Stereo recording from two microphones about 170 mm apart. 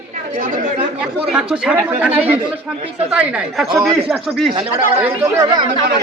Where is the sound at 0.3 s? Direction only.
55° right (ahead or behind).